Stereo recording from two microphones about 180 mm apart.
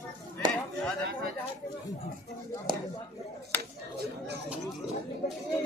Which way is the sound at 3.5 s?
10° left (ahead or behind).